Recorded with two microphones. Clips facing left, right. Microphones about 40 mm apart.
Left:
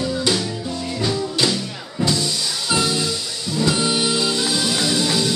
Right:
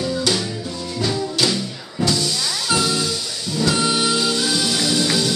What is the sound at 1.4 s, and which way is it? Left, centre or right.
Music, centre.